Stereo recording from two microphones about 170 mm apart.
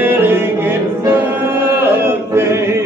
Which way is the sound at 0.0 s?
10° right (ahead or behind).